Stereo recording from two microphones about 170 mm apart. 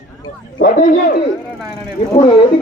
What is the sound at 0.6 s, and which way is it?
Speech, 55° left (ahead or behind).